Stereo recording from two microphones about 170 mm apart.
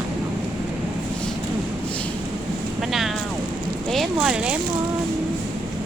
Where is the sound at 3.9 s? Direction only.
Centre (ahead or behind).